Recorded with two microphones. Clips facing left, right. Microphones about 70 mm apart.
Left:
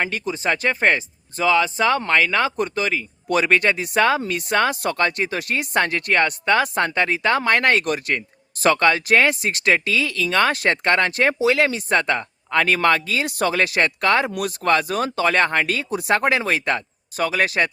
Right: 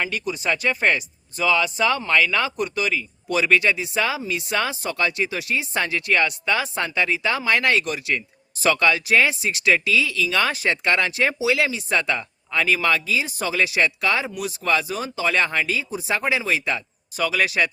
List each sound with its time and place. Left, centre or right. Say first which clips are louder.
0.0 s speech: left 2 dB; left